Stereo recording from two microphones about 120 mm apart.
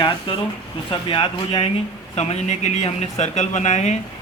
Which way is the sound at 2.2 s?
65° left (ahead or behind).